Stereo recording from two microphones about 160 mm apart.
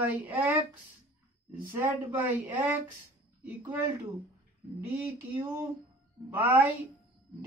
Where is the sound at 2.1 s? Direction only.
10° right (ahead or behind).